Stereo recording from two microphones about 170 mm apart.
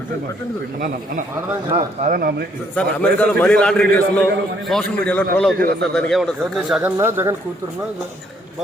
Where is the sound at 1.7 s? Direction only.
45° right (ahead or behind).